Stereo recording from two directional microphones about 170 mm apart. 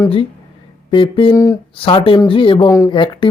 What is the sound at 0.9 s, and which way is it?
Speech, 30° left (ahead or behind).